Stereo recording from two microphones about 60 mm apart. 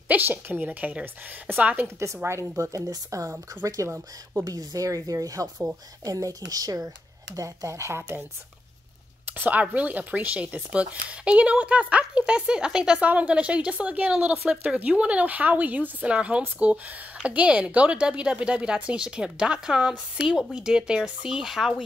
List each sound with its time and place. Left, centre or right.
0.1 s a woman's voice: right
2.2 s speech: right
3.9 s a woman's voice: right
4.5 s speech: right
7.3 s speech: right
9.2 s speech: right; by 13.0 s centre
13.0 s speech: right
21.4 s speech: centre